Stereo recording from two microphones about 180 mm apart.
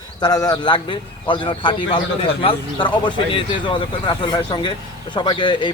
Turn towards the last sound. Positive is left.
turn(degrees=25)  # may be behind; listen again after turning